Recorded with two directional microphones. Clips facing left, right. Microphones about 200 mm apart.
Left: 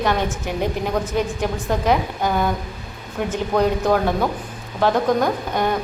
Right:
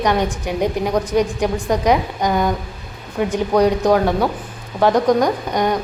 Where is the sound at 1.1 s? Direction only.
15° right (ahead or behind).